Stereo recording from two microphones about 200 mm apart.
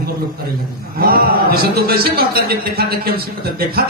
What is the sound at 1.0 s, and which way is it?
Speech, 50° right (ahead or behind).